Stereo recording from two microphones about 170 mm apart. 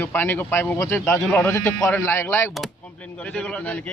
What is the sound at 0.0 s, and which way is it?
Speech, 10° left (ahead or behind).